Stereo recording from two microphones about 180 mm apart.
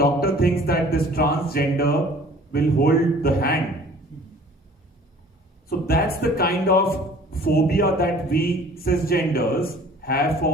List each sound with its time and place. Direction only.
0.0 s a man's voice: 55° left (ahead or behind)
5.6 s a man's voice: 60° left (ahead or behind)